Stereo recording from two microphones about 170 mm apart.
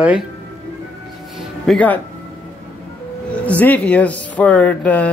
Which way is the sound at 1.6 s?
10° left (ahead or behind).